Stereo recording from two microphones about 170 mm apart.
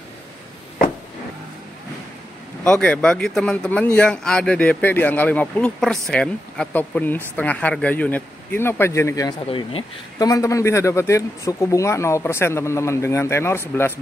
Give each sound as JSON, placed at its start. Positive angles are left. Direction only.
{"t": 2.6, "sound": "speech", "side_deg": 5}
{"t": 9.5, "sound": "speech", "side_deg": 30}
{"t": 10.1, "sound": "speech", "side_deg": 20}